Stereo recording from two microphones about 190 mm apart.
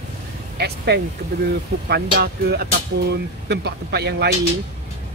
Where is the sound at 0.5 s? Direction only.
60° right (ahead or behind).